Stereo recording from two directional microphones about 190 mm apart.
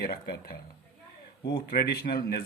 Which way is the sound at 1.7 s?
55° left (ahead or behind).